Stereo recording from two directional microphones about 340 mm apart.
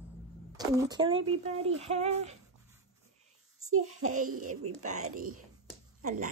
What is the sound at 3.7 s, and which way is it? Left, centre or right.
A child's voice, right.